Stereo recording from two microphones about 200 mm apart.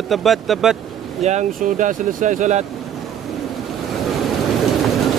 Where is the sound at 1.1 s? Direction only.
35° right (ahead or behind).